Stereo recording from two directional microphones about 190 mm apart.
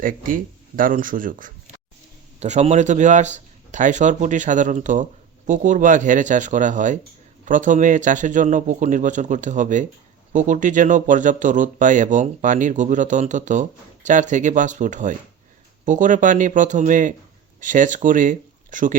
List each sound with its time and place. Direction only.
0.0 s a man's voice: 45° right (ahead or behind)